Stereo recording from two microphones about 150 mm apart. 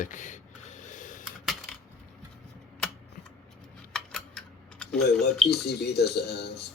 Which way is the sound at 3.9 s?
5° left (ahead or behind).